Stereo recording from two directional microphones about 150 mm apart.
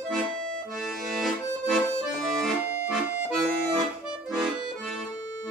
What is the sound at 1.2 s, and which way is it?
Accordion, centre (ahead or behind).